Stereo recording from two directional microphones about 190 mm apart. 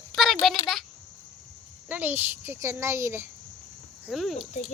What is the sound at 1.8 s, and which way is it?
A child's voice, 10° right (ahead or behind).